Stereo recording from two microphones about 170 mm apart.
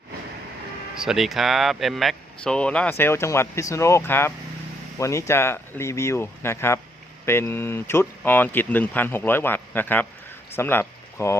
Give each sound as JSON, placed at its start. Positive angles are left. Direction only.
{"t": 1.0, "sound": "speech", "side_deg": 0}